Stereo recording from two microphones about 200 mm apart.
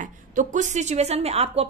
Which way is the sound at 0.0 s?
40° right (ahead or behind).